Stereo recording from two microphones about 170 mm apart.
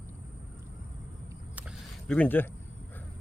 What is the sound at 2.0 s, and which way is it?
Speech, 5° left (ahead or behind).